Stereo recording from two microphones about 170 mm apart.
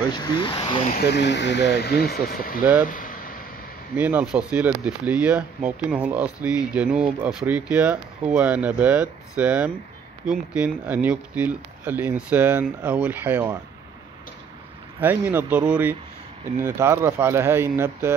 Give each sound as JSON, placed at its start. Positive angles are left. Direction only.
{"t": 0.1, "sound": "speech", "side_deg": 25}
{"t": 0.9, "sound": "speech", "side_deg": 75}
{"t": 2.9, "sound": "a sound", "side_deg": 50}
{"t": 3.9, "sound": "speech", "side_deg": -10}
{"t": 15.0, "sound": "speech", "side_deg": -10}